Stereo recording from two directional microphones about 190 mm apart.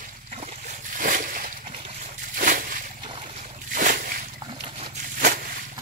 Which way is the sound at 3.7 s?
45° right (ahead or behind).